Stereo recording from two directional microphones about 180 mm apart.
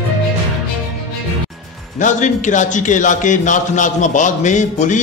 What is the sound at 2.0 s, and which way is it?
A man's voice, 45° left (ahead or behind).